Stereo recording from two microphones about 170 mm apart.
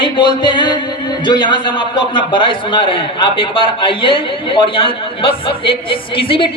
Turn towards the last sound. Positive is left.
turn(degrees=30)  # may be behind; listen again after turning